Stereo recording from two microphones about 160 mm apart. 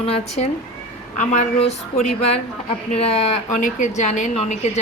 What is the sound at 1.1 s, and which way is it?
Speech, 50° left (ahead or behind).